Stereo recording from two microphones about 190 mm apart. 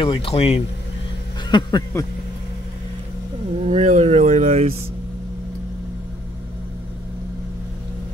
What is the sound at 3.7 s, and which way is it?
Speech, 35° right (ahead or behind).